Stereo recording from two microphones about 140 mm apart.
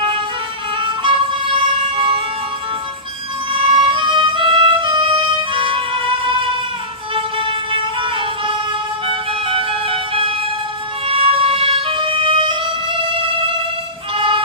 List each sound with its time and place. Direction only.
0.8 s music: 35° right (ahead or behind)
2.0 s vehicle: 35° right (ahead or behind)
3.5 s music: 35° right (ahead or behind)
14.1 s emergency vehicle: 35° right (ahead or behind)